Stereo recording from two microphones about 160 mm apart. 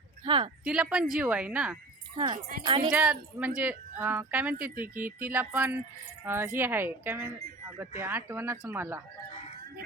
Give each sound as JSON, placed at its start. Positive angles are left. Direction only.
{"t": 0.3, "sound": "speech", "side_deg": -30}
{"t": 0.6, "sound": "a woman's voice", "side_deg": -5}
{"t": 2.1, "sound": "speech", "side_deg": -30}
{"t": 2.9, "sound": "speech", "side_deg": -5}